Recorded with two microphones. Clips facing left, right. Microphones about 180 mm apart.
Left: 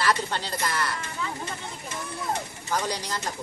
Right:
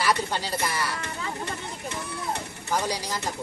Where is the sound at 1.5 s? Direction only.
65° right (ahead or behind).